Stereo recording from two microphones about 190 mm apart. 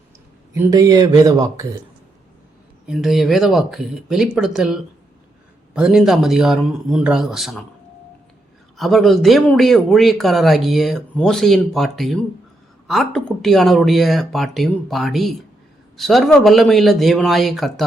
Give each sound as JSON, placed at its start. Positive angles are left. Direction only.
{"t": 0.5, "sound": "speech", "side_deg": -15}
{"t": 2.8, "sound": "speech", "side_deg": 0}
{"t": 8.8, "sound": "speech", "side_deg": 0}